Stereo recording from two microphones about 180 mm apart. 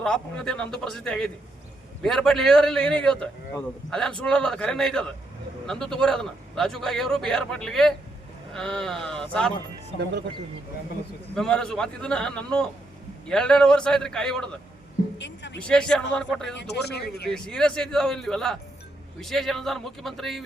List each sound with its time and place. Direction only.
0.0 s a man's voice: 5° left (ahead or behind)
9.9 s speech: 35° left (ahead or behind)
11.3 s a man's voice: 5° left (ahead or behind)
15.2 s a man's voice: 80° left
15.5 s a man's voice: 5° left (ahead or behind)
16.6 s speech: 65° left (ahead or behind)
17.2 s a man's voice: 5° left (ahead or behind)